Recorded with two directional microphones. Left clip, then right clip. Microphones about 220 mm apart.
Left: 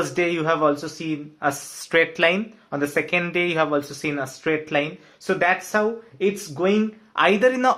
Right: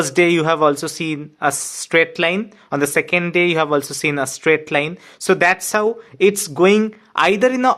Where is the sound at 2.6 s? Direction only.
40° right (ahead or behind).